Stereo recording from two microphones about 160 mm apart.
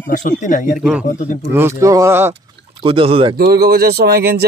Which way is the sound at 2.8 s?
35° right (ahead or behind).